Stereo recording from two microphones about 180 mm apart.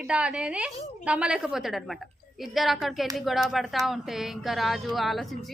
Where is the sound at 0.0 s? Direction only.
5° right (ahead or behind).